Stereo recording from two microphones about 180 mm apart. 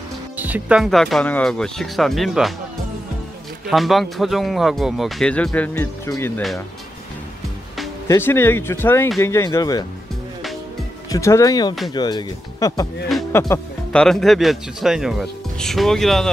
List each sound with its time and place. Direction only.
0.4 s speech: 10° right (ahead or behind)
3.6 s speech: centre (ahead or behind); by 6.4 s 15° left (ahead or behind)
8.1 s speech: 10° left (ahead or behind)
11.1 s speech: 15° left (ahead or behind)
13.9 s speech: centre (ahead or behind)